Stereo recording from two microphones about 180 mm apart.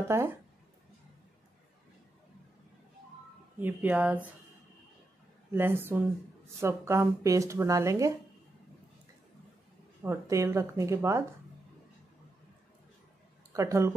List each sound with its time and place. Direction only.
0.1 s speech: 15° right (ahead or behind)
3.5 s speech: 10° right (ahead or behind)
5.5 s speech: 10° right (ahead or behind)
10.0 s speech: 15° right (ahead or behind)
13.5 s speech: 15° right (ahead or behind)